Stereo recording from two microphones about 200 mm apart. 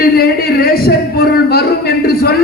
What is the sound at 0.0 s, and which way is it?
Speech, 50° left (ahead or behind).